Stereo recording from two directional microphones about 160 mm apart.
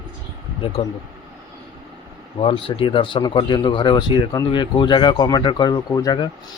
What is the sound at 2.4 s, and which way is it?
Speech, 35° left (ahead or behind).